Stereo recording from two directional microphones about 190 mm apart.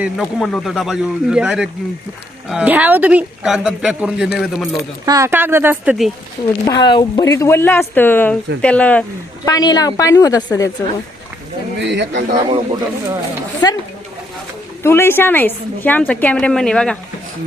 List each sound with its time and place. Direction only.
0.0 s a man's voice: centre (ahead or behind)
5.0 s speech: 15° right (ahead or behind)
6.7 s a woman's voice: 20° left (ahead or behind); by 9.0 s 5° left (ahead or behind)
9.5 s a woman's voice: 20° left (ahead or behind)
11.8 s speech: 70° right (ahead or behind)
12.5 s speech: 20° right (ahead or behind)
13.6 s a woman's voice: 20° left (ahead or behind)
14.8 s a woman's voice: 15° left (ahead or behind)